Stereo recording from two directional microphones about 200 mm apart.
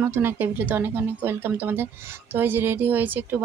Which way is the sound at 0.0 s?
10° right (ahead or behind).